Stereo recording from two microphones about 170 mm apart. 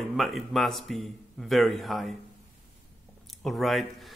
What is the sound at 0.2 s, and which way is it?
Speech, centre (ahead or behind).